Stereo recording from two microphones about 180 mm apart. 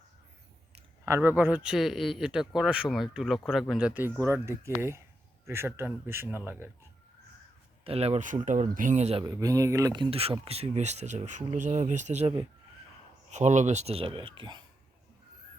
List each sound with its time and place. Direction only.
1.0 s a man's voice: 15° right (ahead or behind)
7.9 s speech: 35° right (ahead or behind)
9.2 s speech: 20° right (ahead or behind); by 12.3 s 40° right (ahead or behind)
13.3 s speech: 40° right (ahead or behind); by 14.6 s 25° right (ahead or behind)